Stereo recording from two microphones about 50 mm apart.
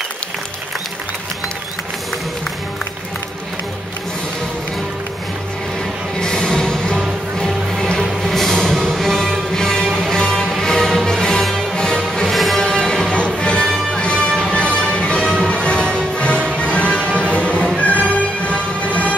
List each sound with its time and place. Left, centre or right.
6.1 s music: centre
12.0 s music: centre
13.1 s music: left